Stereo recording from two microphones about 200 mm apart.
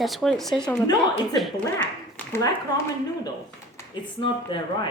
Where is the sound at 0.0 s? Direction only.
Centre (ahead or behind).